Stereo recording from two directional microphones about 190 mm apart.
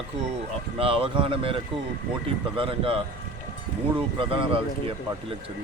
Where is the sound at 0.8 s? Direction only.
30° right (ahead or behind).